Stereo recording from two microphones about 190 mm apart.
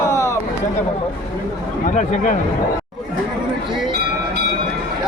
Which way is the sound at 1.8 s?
40° left (ahead or behind).